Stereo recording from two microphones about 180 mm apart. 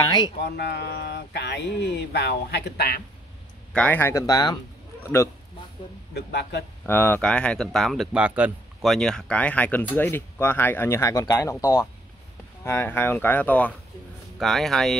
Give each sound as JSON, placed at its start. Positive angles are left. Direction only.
{"t": 0.4, "sound": "speech", "side_deg": 70}
{"t": 3.7, "sound": "speech", "side_deg": 10}
{"t": 6.1, "sound": "speech", "side_deg": 65}
{"t": 6.9, "sound": "speech", "side_deg": 10}